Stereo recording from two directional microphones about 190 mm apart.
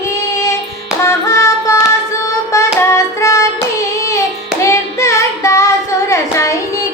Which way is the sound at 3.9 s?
15° left (ahead or behind).